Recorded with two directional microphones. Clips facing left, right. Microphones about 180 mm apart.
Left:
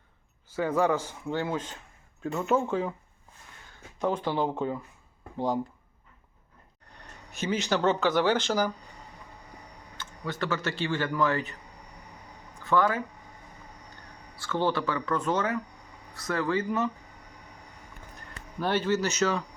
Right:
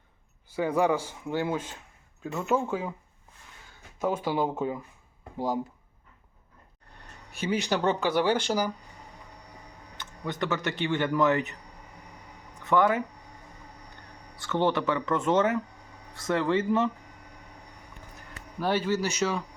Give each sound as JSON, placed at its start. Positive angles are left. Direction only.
{"t": 0.5, "sound": "speech", "side_deg": -15}
{"t": 4.0, "sound": "speech", "side_deg": -10}
{"t": 7.3, "sound": "speech", "side_deg": -10}
{"t": 10.0, "sound": "speech", "side_deg": -20}
{"t": 12.6, "sound": "speech", "side_deg": -20}
{"t": 14.3, "sound": "speech", "side_deg": -20}
{"t": 18.6, "sound": "speech", "side_deg": -10}